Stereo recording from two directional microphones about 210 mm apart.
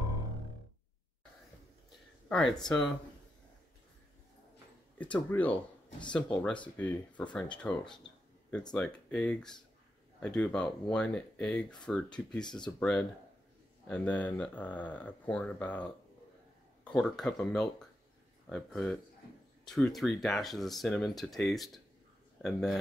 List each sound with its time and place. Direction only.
2.2 s speech: 5° left (ahead or behind)
4.9 s speech: 5° left (ahead or behind)
5.9 s speech: 20° left (ahead or behind)
6.3 s speech: 5° left (ahead or behind)